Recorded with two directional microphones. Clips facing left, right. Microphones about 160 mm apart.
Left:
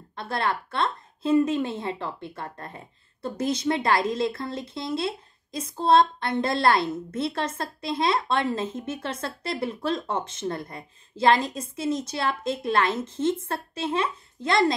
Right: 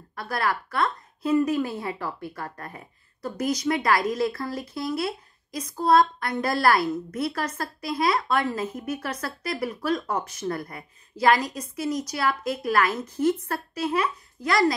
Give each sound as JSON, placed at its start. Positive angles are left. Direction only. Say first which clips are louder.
{"t": 0.1, "sound": "a woman's voice", "louder": "even", "side_deg": 25}